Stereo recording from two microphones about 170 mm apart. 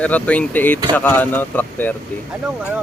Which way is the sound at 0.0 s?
10° left (ahead or behind).